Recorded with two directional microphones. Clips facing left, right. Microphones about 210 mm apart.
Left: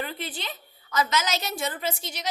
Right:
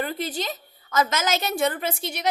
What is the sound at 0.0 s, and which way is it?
A woman's voice, 45° right (ahead or behind).